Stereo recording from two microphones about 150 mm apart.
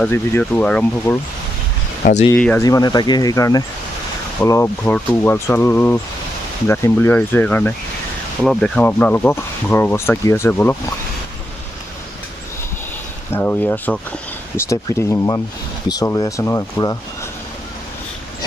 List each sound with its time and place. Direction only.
0.0 s speech: 10° left (ahead or behind)
1.1 s speech: 20° left (ahead or behind)
2.3 s speech: 10° left (ahead or behind)
2.6 s speech: 25° left (ahead or behind)
8.4 s speech: 5° left (ahead or behind)
13.3 s speech: 10° left (ahead or behind)